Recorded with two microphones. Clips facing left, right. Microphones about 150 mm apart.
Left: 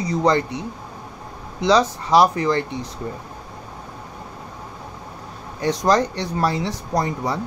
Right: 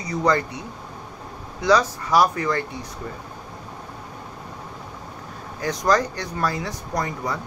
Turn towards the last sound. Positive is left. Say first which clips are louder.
# left 4 dB
turn(degrees=30)  # may be behind; listen again after turning